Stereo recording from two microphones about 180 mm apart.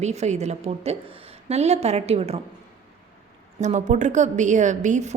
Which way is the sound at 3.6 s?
40° right (ahead or behind).